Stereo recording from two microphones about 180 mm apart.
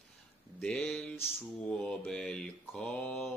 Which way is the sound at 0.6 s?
Centre (ahead or behind).